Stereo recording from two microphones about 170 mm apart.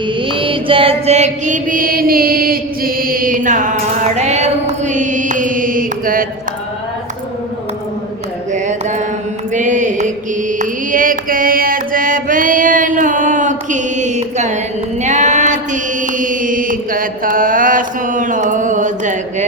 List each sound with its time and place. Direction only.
0.2 s mantra: 30° right (ahead or behind); by 6.2 s 55° right (ahead or behind)
8.5 s mantra: 45° right (ahead or behind)